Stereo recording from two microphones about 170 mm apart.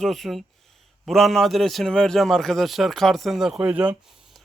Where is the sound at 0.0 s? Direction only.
Centre (ahead or behind).